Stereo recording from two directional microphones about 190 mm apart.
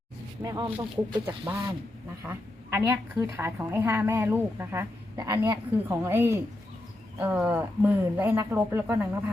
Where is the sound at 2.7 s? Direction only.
10° right (ahead or behind).